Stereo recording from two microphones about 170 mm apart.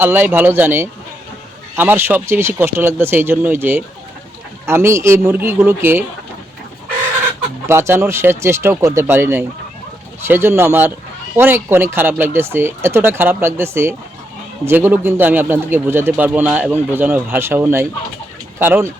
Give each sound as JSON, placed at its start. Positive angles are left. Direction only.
{"t": 0.0, "sound": "a man's voice", "side_deg": -10}
{"t": 7.7, "sound": "a man's voice", "side_deg": -15}